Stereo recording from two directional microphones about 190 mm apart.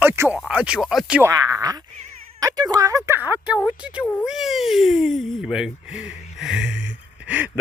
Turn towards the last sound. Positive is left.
turn(degrees=-10)  # may be behind; listen again after turning